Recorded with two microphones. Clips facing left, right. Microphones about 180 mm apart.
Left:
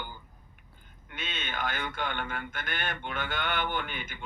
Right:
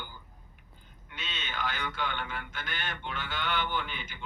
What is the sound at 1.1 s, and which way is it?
Speech, 50° left (ahead or behind).